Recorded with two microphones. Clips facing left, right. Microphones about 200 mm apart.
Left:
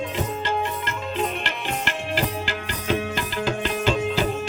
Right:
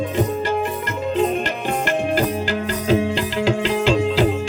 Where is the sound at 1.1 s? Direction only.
40° right (ahead or behind).